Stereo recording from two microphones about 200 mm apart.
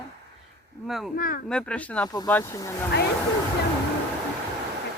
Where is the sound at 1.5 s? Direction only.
5° left (ahead or behind).